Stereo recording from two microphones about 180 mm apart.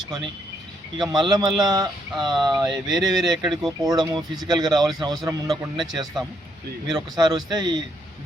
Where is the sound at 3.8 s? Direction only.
20° right (ahead or behind).